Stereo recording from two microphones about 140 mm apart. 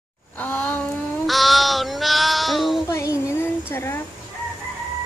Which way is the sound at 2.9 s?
20° left (ahead or behind).